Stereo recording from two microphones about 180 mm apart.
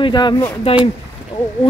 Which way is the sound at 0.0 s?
25° left (ahead or behind).